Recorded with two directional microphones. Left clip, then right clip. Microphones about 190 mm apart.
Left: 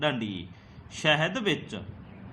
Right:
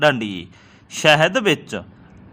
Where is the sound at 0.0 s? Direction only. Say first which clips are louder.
Right 12 dB; 45° right (ahead or behind).